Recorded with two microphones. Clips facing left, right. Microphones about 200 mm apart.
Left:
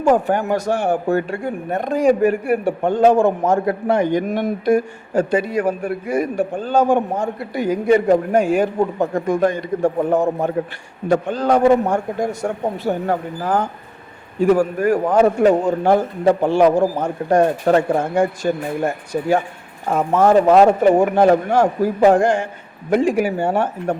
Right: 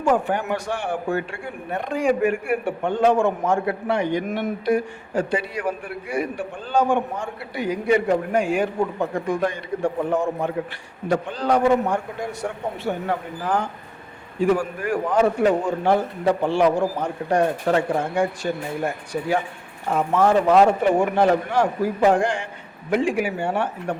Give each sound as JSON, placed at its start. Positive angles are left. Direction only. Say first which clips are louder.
{"t": 0.0, "sound": "a man's voice", "louder": "left 5 dB", "side_deg": 40}